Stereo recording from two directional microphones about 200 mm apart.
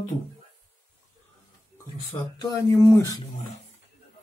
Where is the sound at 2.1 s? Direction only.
10° left (ahead or behind).